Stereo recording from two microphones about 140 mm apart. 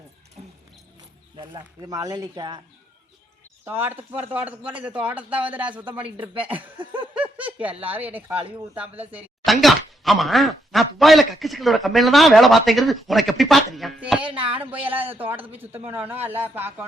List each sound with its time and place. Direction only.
0.4 s music: 45° right (ahead or behind)
1.4 s speech: 30° right (ahead or behind)
3.7 s speech: 15° right (ahead or behind)
6.7 s a sound: 35° right (ahead or behind)
7.1 s speech: 10° right (ahead or behind)
9.5 s speech: centre (ahead or behind)